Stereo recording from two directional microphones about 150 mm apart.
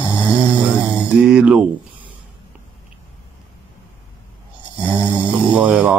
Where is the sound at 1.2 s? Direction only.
5° right (ahead or behind).